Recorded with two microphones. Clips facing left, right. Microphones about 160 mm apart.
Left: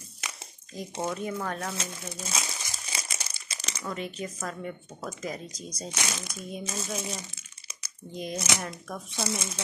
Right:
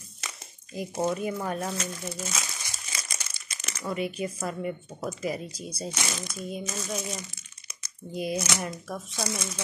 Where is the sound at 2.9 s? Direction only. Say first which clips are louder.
Left 2 dB; 30° left (ahead or behind).